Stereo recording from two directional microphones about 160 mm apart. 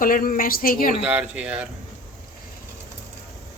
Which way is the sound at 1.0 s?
10° right (ahead or behind).